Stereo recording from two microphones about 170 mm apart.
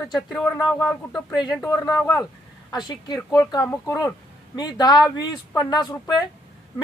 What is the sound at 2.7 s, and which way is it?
A woman's voice, 25° left (ahead or behind).